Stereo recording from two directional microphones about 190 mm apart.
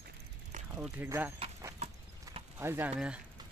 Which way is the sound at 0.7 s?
10° right (ahead or behind).